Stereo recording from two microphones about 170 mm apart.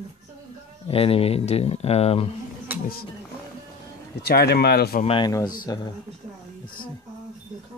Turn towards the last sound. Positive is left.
turn(degrees=25)  # may be behind; listen again after turning